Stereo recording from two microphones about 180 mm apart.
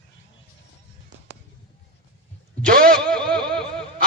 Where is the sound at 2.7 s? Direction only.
55° right (ahead or behind).